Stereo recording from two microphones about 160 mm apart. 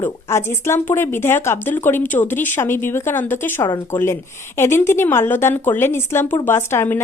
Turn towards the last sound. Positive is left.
turn(degrees=15)  # may be behind; listen again after turning